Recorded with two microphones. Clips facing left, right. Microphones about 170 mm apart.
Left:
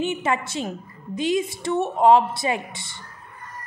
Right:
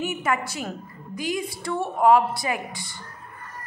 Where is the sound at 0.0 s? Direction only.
25° left (ahead or behind).